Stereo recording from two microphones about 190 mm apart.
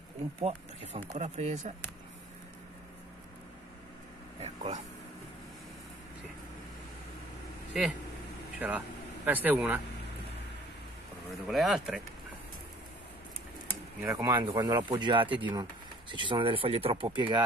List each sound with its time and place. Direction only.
0.4 s speech: 30° right (ahead or behind)
4.4 s speech: 35° right (ahead or behind)
8.5 s speech: 10° right (ahead or behind)
11.4 s speech: centre (ahead or behind)
14.0 s speech: 20° right (ahead or behind)